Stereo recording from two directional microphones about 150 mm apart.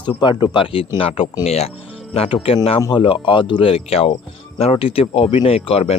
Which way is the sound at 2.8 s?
30° left (ahead or behind).